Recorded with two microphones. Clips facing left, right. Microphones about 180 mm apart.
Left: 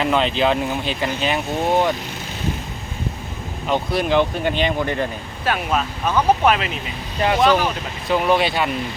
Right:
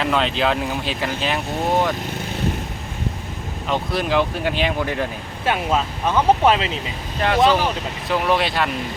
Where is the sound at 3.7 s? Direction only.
Centre (ahead or behind).